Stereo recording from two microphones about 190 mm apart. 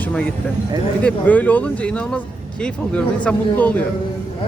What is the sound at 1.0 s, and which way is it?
Speech, 10° left (ahead or behind).